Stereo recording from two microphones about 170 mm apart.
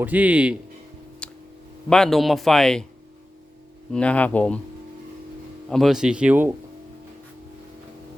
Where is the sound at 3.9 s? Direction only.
10° left (ahead or behind).